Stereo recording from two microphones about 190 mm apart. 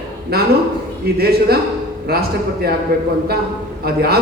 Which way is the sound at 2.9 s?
55° right (ahead or behind).